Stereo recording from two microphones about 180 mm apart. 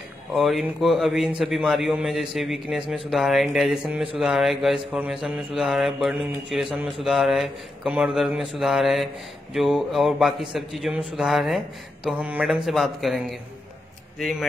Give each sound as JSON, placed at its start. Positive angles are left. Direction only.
{"t": 0.3, "sound": "a man's voice", "side_deg": 0}